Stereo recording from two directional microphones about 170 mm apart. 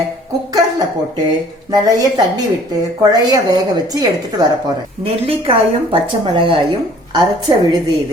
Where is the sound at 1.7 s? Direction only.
25° right (ahead or behind).